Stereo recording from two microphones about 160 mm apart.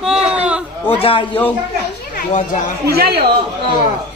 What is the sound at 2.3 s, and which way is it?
Speech, 50° left (ahead or behind).